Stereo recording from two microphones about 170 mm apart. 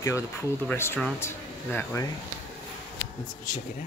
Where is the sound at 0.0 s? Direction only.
15° left (ahead or behind).